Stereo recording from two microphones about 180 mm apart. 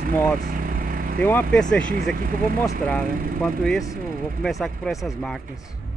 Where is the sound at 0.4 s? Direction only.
50° right (ahead or behind).